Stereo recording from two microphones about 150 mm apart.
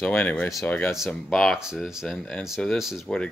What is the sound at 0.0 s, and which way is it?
Speech, 10° left (ahead or behind).